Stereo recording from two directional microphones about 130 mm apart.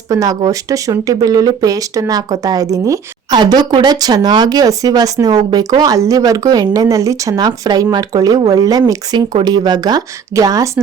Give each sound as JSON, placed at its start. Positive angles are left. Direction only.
{"t": 0.1, "sound": "speech", "side_deg": -25}